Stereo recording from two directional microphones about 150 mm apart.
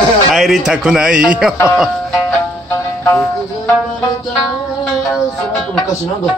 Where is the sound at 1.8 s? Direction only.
5° left (ahead or behind).